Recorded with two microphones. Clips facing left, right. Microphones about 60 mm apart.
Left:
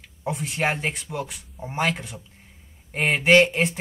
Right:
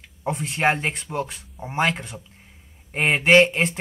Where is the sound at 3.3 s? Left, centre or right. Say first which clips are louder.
Right 1 dB; right.